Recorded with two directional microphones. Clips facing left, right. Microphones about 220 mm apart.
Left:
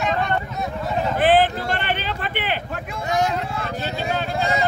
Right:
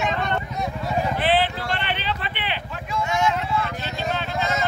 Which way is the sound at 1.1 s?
45° left (ahead or behind).